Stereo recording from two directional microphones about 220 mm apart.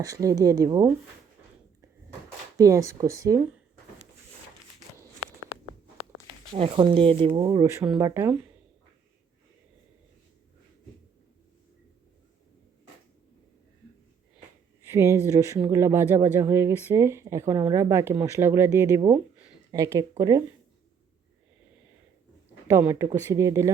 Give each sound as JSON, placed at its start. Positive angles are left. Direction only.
{"t": 0.0, "sound": "speech", "side_deg": -15}
{"t": 2.6, "sound": "speech", "side_deg": -15}
{"t": 6.5, "sound": "speech", "side_deg": -25}
{"t": 14.8, "sound": "speech", "side_deg": -10}
{"t": 22.6, "sound": "speech", "side_deg": -10}